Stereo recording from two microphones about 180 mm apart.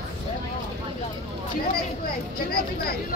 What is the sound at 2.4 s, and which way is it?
Speech, 55° left (ahead or behind).